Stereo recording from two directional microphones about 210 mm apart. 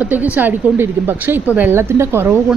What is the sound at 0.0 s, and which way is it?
A woman's voice, 10° right (ahead or behind).